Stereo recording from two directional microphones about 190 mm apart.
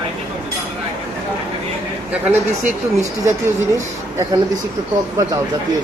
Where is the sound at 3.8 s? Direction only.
20° right (ahead or behind).